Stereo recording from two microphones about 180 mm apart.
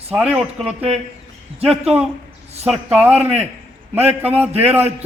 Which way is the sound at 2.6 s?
5° right (ahead or behind).